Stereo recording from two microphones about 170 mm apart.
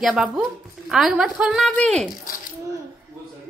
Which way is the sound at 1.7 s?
5° left (ahead or behind).